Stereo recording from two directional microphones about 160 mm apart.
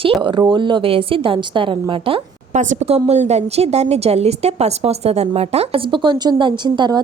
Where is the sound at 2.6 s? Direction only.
45° right (ahead or behind).